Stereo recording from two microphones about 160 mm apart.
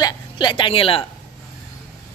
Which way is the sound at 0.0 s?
30° left (ahead or behind).